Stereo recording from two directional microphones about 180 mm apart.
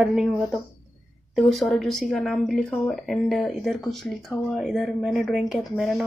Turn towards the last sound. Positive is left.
turn(degrees=0)  # may be behind; listen again after turning